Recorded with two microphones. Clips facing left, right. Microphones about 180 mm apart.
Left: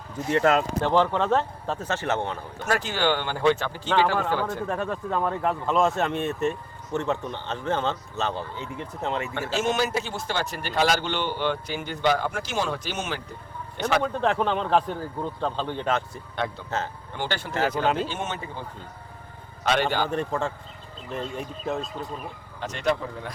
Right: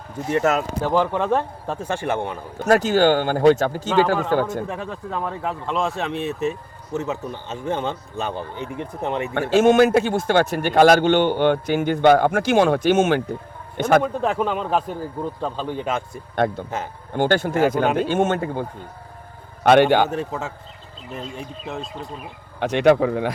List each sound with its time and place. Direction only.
0.3 s speech: 10° right (ahead or behind)
2.6 s speech: 40° right (ahead or behind)
4.7 s speech: centre (ahead or behind); by 9.3 s 15° right (ahead or behind)
9.3 s a man's voice: 55° right (ahead or behind)
14.0 s speech: 5° right (ahead or behind)
16.3 s speech: 50° right (ahead or behind)
16.6 s speech: 10° right (ahead or behind)
17.1 s speech: 50° right (ahead or behind)
19.6 s speech: 60° right (ahead or behind)
20.1 s speech: 5° right (ahead or behind)
22.6 s speech: 65° right (ahead or behind)